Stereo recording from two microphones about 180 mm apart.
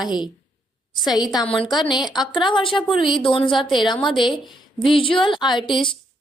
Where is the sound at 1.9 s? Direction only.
25° left (ahead or behind).